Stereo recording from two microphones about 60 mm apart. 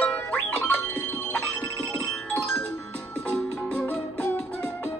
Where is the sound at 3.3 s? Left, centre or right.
Left.